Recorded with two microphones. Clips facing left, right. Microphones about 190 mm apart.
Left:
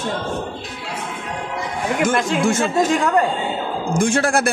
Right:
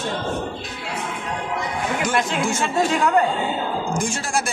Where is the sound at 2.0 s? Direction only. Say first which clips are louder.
Left 5 dB; 50° left (ahead or behind).